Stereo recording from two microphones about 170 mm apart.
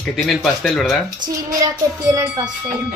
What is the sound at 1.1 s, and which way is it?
A child's voice, 25° right (ahead or behind).